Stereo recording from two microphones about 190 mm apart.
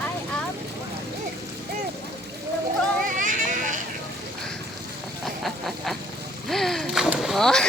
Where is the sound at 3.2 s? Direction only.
45° right (ahead or behind).